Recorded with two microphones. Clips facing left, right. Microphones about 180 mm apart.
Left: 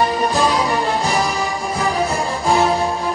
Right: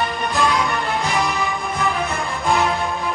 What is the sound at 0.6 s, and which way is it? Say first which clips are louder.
Music: left 3 dB; 35° left (ahead or behind).